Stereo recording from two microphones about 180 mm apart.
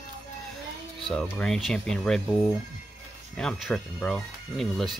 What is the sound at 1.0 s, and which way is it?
Speech, 5° left (ahead or behind).